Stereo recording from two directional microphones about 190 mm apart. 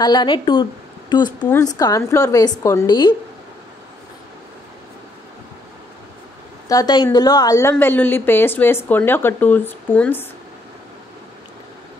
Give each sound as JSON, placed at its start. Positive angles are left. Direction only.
{"t": 0.0, "sound": "a woman's voice", "side_deg": 20}
{"t": 6.7, "sound": "a woman's voice", "side_deg": 20}